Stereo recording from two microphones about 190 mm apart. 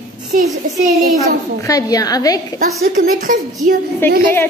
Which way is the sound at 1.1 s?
20° left (ahead or behind).